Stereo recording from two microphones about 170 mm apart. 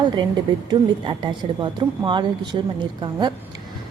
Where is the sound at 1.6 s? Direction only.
30° right (ahead or behind).